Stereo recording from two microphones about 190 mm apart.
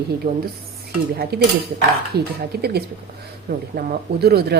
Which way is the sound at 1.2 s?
55° right (ahead or behind).